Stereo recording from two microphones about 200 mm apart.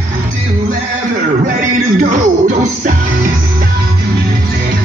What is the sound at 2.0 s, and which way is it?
Music, 40° right (ahead or behind).